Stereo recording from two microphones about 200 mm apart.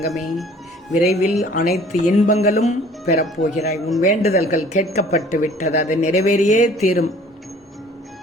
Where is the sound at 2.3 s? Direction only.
35° left (ahead or behind).